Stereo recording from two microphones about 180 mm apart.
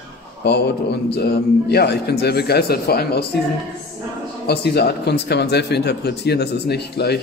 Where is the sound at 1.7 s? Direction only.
65° left (ahead or behind).